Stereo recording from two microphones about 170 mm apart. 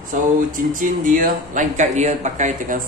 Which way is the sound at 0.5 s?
50° right (ahead or behind).